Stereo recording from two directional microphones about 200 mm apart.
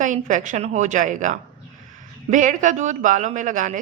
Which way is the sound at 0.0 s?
40° right (ahead or behind).